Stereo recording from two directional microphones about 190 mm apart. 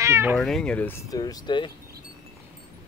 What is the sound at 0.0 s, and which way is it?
Speech, 15° right (ahead or behind).